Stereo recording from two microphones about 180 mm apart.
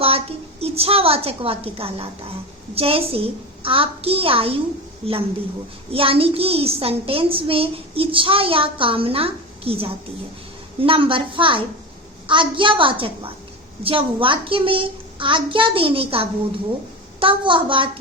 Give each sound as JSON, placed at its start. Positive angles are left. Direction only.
{"t": 0.0, "sound": "a woman's voice", "side_deg": -35}